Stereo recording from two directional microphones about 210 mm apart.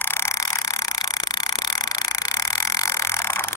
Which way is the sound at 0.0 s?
10° left (ahead or behind).